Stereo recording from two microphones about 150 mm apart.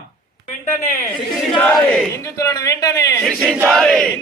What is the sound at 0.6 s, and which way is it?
Speech, 55° left (ahead or behind).